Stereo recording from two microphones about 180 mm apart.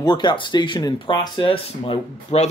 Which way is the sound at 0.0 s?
25° left (ahead or behind).